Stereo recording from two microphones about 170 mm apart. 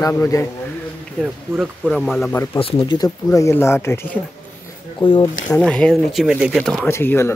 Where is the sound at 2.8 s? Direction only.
20° left (ahead or behind).